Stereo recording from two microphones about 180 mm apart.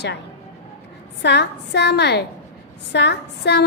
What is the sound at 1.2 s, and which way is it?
A woman's voice, 70° left (ahead or behind).